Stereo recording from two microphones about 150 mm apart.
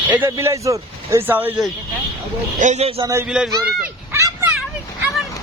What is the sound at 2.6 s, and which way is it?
Speech, 50° right (ahead or behind).